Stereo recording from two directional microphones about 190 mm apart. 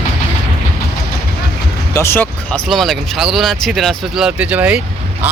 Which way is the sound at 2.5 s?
Centre (ahead or behind).